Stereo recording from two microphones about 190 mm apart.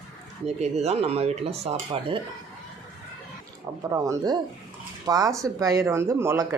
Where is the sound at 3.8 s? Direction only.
15° right (ahead or behind).